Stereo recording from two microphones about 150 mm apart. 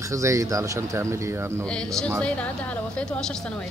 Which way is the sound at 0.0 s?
20° right (ahead or behind).